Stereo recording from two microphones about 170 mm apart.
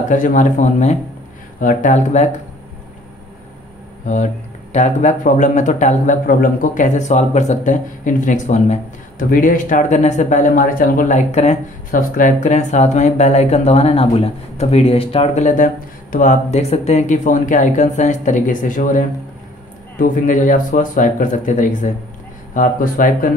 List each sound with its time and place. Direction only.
0.1 s speech: 50° left (ahead or behind)
4.7 s speech: 45° left (ahead or behind)